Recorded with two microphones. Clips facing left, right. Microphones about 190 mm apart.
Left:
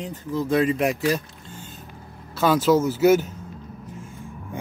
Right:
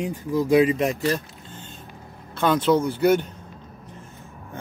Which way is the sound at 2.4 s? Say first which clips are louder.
Left 1 dB; 5° left (ahead or behind).